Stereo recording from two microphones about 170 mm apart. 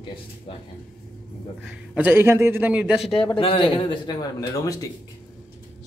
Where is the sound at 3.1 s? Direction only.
30° left (ahead or behind).